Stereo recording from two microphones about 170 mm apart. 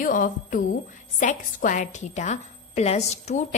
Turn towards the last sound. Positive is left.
turn(degrees=40)  # may be behind; listen again after turning